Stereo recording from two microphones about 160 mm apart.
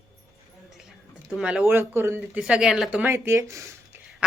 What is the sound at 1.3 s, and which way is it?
Speech, 5° right (ahead or behind).